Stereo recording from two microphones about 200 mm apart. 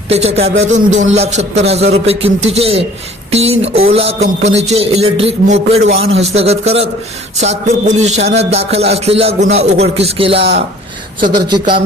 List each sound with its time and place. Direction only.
0.1 s music: 30° right (ahead or behind)
10.0 s speech: 30° right (ahead or behind)
11.4 s speech: 25° right (ahead or behind)